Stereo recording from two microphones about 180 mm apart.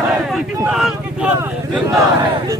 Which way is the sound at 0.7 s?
Centre (ahead or behind).